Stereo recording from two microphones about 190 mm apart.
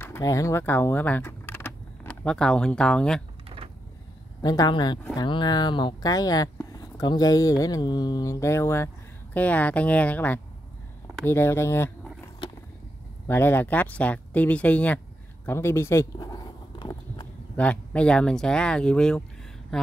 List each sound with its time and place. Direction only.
0.0 s speech: 15° left (ahead or behind)
3.4 s a sound: 30° right (ahead or behind)
4.4 s speech: 20° left (ahead or behind)
13.3 s speech: 10° left (ahead or behind)
15.4 s a sound: 15° left (ahead or behind)
17.6 s speech: 5° left (ahead or behind)